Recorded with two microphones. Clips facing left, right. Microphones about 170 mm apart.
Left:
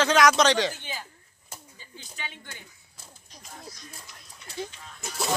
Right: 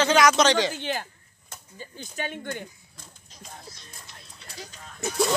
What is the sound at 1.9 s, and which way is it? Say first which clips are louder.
Speech: right 8 dB; 50° right (ahead or behind).